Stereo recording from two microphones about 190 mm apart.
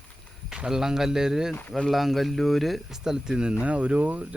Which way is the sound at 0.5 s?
5° right (ahead or behind).